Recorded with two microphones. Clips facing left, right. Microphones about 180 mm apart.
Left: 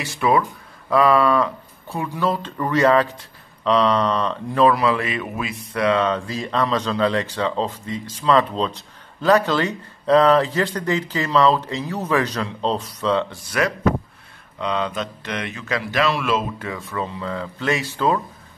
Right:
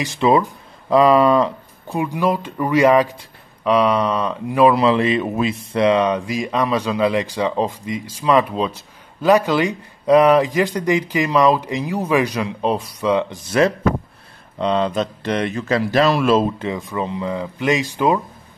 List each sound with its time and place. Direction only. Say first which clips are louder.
0.0 s speech: right 3 dB; 20° right (ahead or behind)
4.7 s speech: right 5 dB; 25° right (ahead or behind)
13.5 s speech: right 5 dB; 30° right (ahead or behind)
16.5 s speech: right 4 dB; 20° right (ahead or behind)